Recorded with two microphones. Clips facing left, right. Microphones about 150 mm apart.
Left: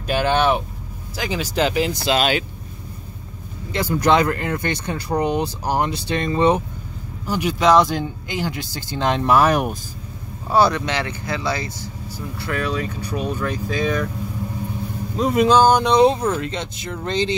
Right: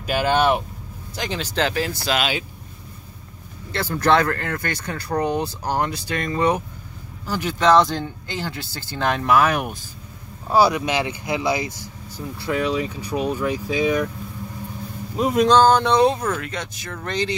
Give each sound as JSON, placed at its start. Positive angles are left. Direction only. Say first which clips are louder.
{"t": 0.0, "sound": "speech", "louder": "left 1 dB", "side_deg": -5}
{"t": 1.1, "sound": "speech", "louder": "left 2 dB", "side_deg": 5}
{"t": 3.7, "sound": "speech", "louder": "left 1 dB", "side_deg": 15}
{"t": 7.2, "sound": "speech", "louder": "left 1 dB", "side_deg": 15}
{"t": 10.5, "sound": "speech", "louder": "even", "side_deg": -5}
{"t": 15.1, "sound": "speech", "louder": "left 1 dB", "side_deg": -5}
{"t": 15.4, "sound": "speech", "louder": "even", "side_deg": 10}